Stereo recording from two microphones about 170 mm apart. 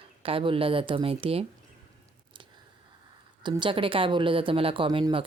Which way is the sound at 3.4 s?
25° right (ahead or behind).